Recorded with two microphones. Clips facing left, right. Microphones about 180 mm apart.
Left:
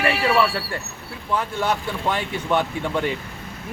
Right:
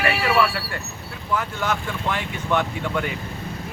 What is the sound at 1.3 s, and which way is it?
Speech, 30° left (ahead or behind).